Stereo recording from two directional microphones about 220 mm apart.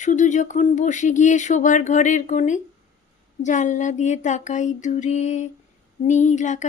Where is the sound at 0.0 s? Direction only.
35° left (ahead or behind).